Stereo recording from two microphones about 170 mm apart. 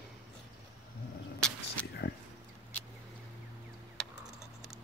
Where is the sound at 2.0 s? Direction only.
75° left (ahead or behind).